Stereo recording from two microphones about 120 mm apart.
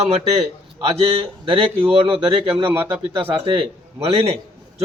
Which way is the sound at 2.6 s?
15° right (ahead or behind).